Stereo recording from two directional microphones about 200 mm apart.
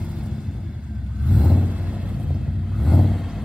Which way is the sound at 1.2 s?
5° right (ahead or behind).